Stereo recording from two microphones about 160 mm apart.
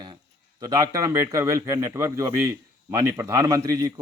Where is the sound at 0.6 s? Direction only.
20° right (ahead or behind).